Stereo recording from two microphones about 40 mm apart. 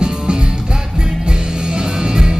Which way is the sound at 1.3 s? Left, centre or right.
Right.